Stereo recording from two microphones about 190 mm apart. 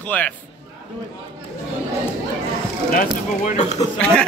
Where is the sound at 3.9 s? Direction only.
5° left (ahead or behind).